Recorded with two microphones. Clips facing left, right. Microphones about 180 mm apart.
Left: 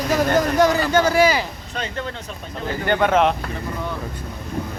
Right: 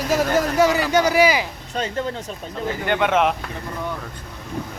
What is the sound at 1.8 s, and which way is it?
Speech, 40° right (ahead or behind).